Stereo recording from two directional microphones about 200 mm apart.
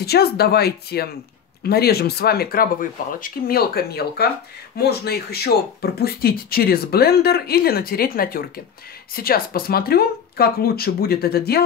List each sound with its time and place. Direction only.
0.0 s speech: 50° left (ahead or behind)